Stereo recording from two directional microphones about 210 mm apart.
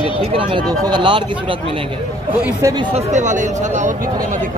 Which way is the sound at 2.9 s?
35° right (ahead or behind).